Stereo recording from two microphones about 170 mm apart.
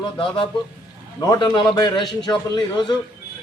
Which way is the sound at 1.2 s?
20° left (ahead or behind).